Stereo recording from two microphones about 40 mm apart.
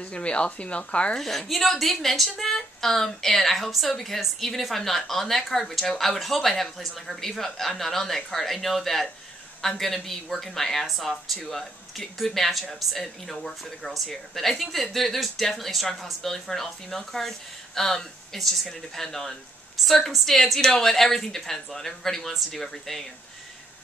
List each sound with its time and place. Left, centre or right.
0.0 s speech: left
1.1 s a woman's voice: centre